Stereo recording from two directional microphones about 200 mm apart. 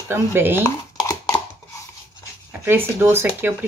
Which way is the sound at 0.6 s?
15° left (ahead or behind).